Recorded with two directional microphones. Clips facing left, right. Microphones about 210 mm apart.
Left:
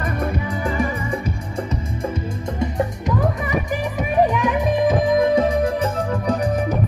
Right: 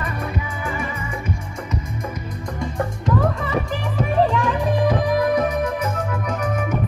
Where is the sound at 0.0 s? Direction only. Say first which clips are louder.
Left 4 dB; 40° left (ahead or behind).